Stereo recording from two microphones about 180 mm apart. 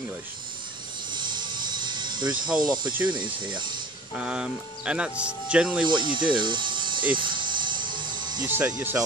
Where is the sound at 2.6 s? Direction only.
25° right (ahead or behind).